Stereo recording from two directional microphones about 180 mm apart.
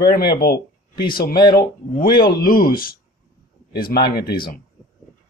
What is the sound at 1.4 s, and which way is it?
Speech, 25° left (ahead or behind).